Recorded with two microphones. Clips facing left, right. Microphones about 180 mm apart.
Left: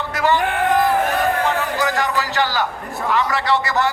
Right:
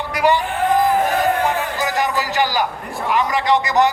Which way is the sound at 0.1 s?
15° right (ahead or behind).